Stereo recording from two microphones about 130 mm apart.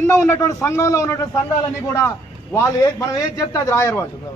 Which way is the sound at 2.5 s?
25° left (ahead or behind).